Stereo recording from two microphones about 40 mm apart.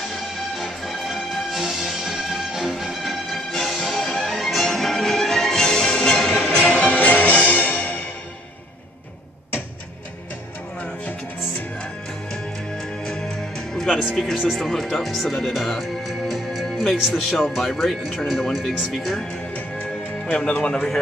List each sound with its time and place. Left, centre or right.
0.6 s music: centre
6.6 s music: left
13.0 s music: centre
14.1 s speech: centre
19.5 s music: left